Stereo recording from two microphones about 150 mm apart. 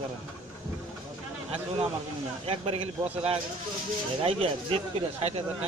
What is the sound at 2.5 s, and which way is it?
Speech, 40° right (ahead or behind).